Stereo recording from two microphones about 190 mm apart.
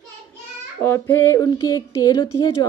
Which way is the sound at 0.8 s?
10° left (ahead or behind).